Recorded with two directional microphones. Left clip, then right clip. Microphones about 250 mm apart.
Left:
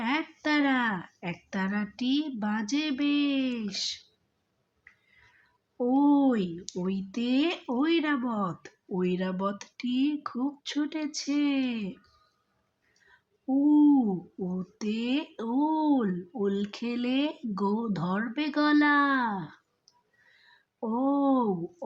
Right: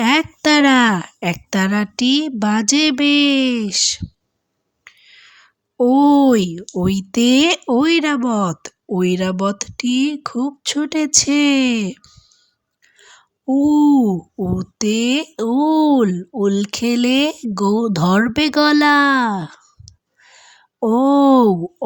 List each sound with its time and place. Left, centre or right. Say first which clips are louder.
0.0 s speech: right 14 dB; right
5.7 s speech: right 12 dB; right
13.1 s a woman's voice: right 11 dB; right